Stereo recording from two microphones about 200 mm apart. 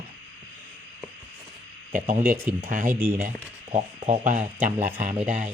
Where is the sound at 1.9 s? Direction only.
45° right (ahead or behind).